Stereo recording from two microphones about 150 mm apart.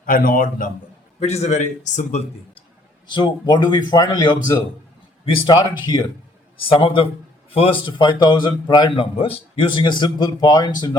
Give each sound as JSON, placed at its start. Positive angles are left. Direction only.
{"t": 0.0, "sound": "a man's voice", "side_deg": 70}
{"t": 1.2, "sound": "a man's voice", "side_deg": 45}
{"t": 3.1, "sound": "a man's voice", "side_deg": 30}